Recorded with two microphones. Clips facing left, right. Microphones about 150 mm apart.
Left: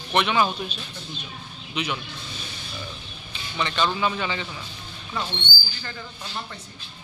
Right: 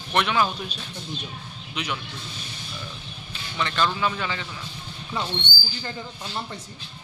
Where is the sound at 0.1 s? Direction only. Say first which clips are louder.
Left 1 dB; centre (ahead or behind).